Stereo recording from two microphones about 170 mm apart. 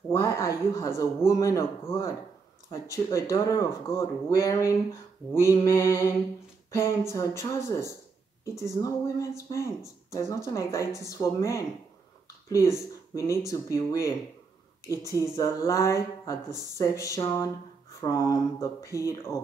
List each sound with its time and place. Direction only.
0.1 s speech: 20° left (ahead or behind)